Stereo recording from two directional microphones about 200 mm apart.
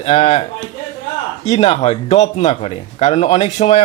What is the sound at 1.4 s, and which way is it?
Speech, 30° left (ahead or behind).